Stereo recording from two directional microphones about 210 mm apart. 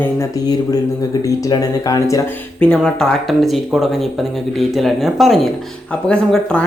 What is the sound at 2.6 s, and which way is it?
Speech, 5° left (ahead or behind).